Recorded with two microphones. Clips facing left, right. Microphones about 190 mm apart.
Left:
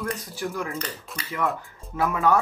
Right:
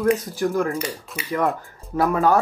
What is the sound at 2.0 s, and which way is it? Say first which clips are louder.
Speech: right 4 dB; 35° right (ahead or behind).